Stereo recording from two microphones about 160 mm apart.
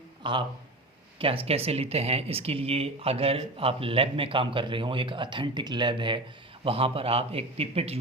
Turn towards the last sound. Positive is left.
turn(degrees=-40)  # may be behind; listen again after turning